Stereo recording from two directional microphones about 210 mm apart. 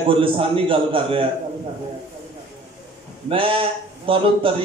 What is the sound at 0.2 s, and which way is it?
A man's voice, 25° right (ahead or behind).